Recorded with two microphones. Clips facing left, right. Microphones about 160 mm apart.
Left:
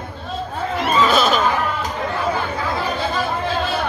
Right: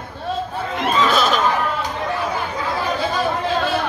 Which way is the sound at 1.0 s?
Centre (ahead or behind).